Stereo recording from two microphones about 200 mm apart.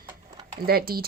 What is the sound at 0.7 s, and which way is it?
Speech, 50° right (ahead or behind).